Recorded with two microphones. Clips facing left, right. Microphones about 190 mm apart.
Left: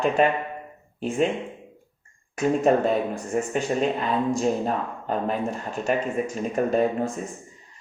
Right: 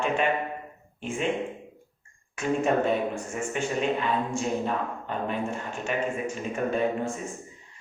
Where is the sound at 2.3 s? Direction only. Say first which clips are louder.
Left 4 dB; 40° left (ahead or behind).